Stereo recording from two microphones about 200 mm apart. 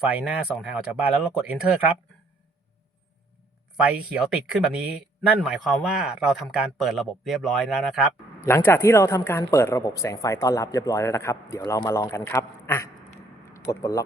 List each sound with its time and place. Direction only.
0.2 s speech: 5° right (ahead or behind)
3.8 s speech: 5° right (ahead or behind)
8.4 s speech: 10° left (ahead or behind)